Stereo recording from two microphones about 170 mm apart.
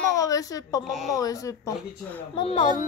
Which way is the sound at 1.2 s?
20° left (ahead or behind).